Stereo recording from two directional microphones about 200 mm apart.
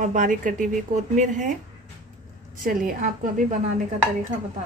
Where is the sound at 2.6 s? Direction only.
45° right (ahead or behind).